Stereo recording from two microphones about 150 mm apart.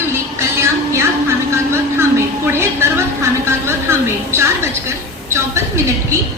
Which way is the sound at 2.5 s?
15° right (ahead or behind).